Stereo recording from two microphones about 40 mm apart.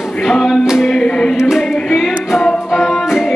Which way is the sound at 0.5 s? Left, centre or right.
Centre.